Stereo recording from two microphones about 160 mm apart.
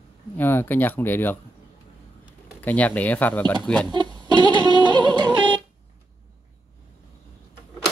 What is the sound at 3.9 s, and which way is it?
Music, 25° right (ahead or behind).